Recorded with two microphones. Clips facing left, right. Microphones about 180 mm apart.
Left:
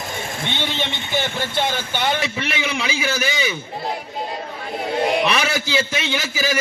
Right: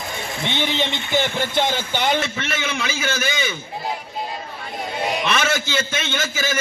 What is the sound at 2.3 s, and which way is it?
A man's voice, 10° left (ahead or behind).